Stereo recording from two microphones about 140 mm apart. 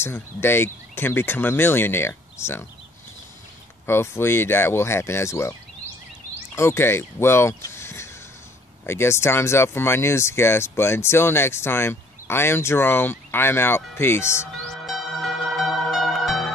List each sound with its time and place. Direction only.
0.0 s speech: 15° left (ahead or behind)
3.8 s speech: 15° left (ahead or behind)
6.5 s speech: 20° left (ahead or behind)
14.9 s zither: centre (ahead or behind)